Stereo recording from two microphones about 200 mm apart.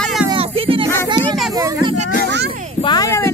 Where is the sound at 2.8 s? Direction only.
20° left (ahead or behind).